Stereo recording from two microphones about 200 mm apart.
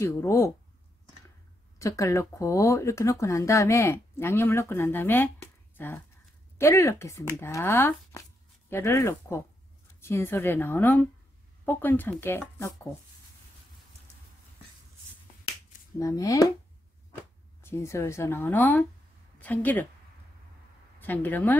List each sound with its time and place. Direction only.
0.0 s speech: 15° left (ahead or behind)
1.8 s speech: 15° left (ahead or behind)
16.0 s speech: 15° left (ahead or behind)
17.6 s speech: 10° left (ahead or behind)
21.0 s speech: 10° left (ahead or behind)